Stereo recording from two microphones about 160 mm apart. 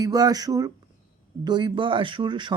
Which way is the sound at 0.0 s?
25° right (ahead or behind).